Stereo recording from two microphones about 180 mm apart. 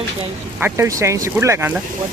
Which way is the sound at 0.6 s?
15° right (ahead or behind).